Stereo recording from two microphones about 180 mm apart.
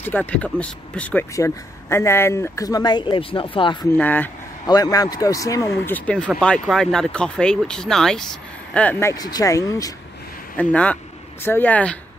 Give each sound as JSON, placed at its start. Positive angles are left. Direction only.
{"t": 0.0, "sound": "speech", "side_deg": 10}
{"t": 3.9, "sound": "speech", "side_deg": 10}
{"t": 4.6, "sound": "speech", "side_deg": 20}
{"t": 5.9, "sound": "speech", "side_deg": 10}
{"t": 10.6, "sound": "speech", "side_deg": 5}